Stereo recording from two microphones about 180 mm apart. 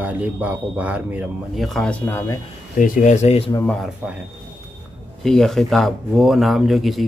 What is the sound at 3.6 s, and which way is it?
Speech, centre (ahead or behind).